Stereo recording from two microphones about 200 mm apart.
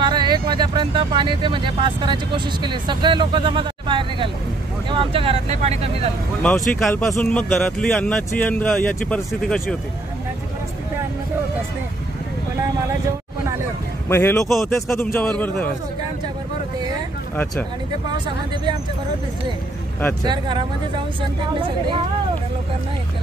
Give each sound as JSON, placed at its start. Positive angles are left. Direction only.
{"t": 0.0, "sound": "speech", "side_deg": -20}
{"t": 6.4, "sound": "a man's voice", "side_deg": 5}
{"t": 14.0, "sound": "a man's voice", "side_deg": 10}
{"t": 20.2, "sound": "speech", "side_deg": -25}